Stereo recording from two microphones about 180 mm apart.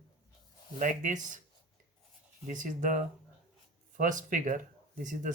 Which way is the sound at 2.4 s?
45° right (ahead or behind).